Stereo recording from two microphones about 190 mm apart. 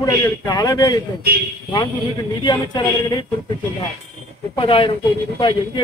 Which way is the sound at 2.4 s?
25° left (ahead or behind).